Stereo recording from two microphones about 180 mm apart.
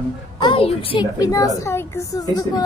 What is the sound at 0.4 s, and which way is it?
A woman's voice, 30° left (ahead or behind).